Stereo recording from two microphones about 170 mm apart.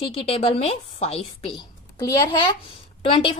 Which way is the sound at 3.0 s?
30° left (ahead or behind).